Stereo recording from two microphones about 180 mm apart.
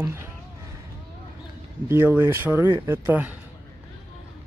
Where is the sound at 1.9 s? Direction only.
15° right (ahead or behind).